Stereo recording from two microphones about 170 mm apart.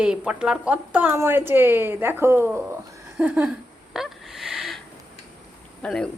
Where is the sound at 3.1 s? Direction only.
10° right (ahead or behind).